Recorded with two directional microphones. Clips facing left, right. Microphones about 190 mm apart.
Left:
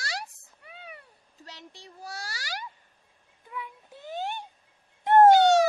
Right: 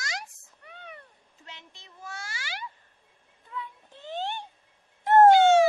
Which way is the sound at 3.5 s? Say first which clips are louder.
Even; 10° left (ahead or behind).